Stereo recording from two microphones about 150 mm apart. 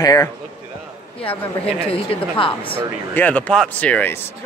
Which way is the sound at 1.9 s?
40° left (ahead or behind).